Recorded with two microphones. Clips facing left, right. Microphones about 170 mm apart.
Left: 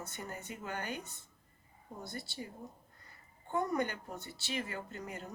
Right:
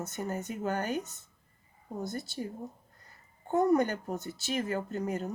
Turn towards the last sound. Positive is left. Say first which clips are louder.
# right 10 dB
turn(degrees=-45)  # may be behind; listen again after turning